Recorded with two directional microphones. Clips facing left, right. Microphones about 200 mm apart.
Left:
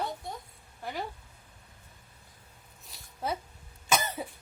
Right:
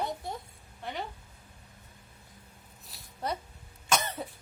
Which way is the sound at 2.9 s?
Centre (ahead or behind).